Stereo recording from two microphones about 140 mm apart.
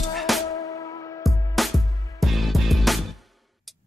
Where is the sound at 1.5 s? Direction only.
Centre (ahead or behind).